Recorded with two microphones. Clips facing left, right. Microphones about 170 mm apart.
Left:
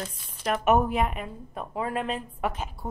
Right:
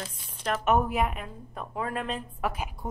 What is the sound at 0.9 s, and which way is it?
Speech, centre (ahead or behind).